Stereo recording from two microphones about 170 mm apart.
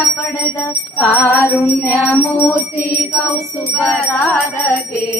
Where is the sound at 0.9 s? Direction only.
10° left (ahead or behind).